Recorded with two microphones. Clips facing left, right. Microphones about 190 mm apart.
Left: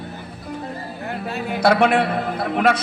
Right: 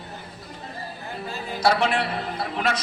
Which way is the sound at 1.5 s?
55° left (ahead or behind).